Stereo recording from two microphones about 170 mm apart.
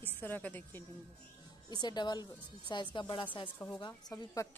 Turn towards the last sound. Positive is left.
turn(degrees=20)  # may be behind; listen again after turning